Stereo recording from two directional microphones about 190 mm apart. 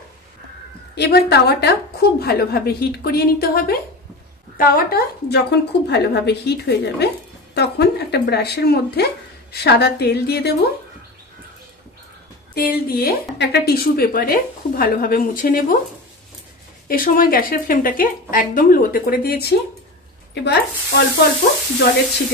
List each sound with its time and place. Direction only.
0.9 s speech: 60° left (ahead or behind)
12.5 s a woman's voice: 55° left (ahead or behind)
16.8 s a woman's voice: 45° left (ahead or behind)
20.4 s speech: 60° left (ahead or behind)